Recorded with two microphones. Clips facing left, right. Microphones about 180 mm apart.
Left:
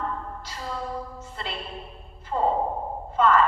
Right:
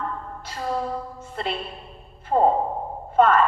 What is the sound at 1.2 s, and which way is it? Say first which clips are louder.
A woman's voice: right 6 dB; 55° right (ahead or behind).